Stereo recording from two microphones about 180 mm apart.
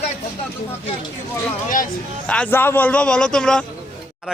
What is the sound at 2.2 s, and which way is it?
A man's voice, 5° left (ahead or behind).